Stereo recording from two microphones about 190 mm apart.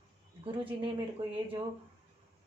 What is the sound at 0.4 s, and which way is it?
Speech, 30° right (ahead or behind).